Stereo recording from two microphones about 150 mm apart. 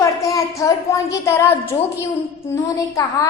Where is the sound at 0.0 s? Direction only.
20° left (ahead or behind).